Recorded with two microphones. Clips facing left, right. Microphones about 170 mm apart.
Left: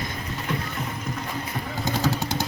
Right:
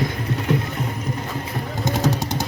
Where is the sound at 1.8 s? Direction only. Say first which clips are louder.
Right 4 dB; 20° right (ahead or behind).